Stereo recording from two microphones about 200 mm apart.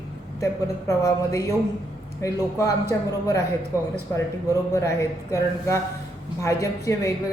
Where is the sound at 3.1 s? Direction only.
15° left (ahead or behind).